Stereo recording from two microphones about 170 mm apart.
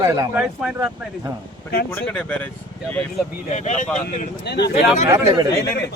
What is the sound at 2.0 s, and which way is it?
Speech, 10° left (ahead or behind).